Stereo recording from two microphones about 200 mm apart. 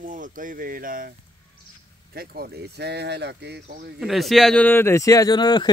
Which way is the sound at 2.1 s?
50° right (ahead or behind).